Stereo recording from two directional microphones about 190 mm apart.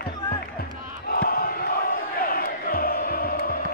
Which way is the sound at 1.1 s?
50° left (ahead or behind).